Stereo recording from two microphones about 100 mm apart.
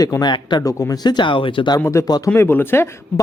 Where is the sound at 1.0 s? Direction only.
50° left (ahead or behind).